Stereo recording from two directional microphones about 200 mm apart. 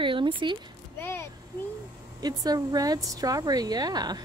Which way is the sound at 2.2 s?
20° right (ahead or behind).